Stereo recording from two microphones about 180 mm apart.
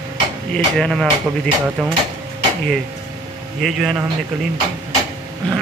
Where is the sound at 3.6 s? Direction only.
Centre (ahead or behind).